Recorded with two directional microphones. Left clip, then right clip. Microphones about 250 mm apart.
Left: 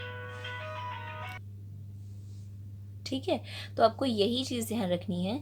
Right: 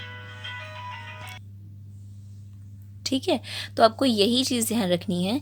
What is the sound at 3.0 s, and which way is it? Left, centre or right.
A woman's voice, right.